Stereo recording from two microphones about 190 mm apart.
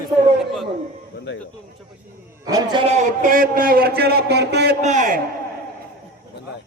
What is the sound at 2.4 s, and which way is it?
A man's voice, 20° right (ahead or behind).